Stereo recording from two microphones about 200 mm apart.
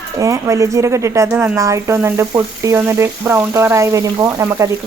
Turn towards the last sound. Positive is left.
turn(degrees=-15)  # may be behind; listen again after turning